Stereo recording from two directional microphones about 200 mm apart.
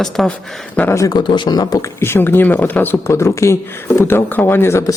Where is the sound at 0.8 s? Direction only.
15° left (ahead or behind).